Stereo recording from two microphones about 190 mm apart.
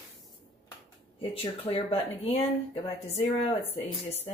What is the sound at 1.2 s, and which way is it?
Speech, 30° left (ahead or behind).